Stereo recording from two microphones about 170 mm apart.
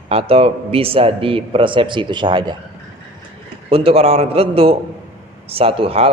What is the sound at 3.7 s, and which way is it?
Speech, 35° right (ahead or behind).